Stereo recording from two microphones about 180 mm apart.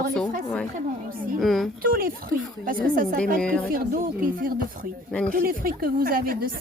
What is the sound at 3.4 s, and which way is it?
Speech, 5° left (ahead or behind).